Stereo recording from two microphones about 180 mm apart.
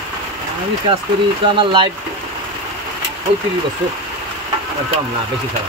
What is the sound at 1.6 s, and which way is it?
Speech, 25° right (ahead or behind).